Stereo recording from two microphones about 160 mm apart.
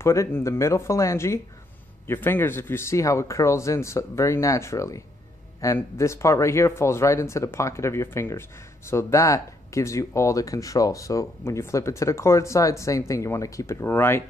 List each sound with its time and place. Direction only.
0.0 s speech: 15° left (ahead or behind)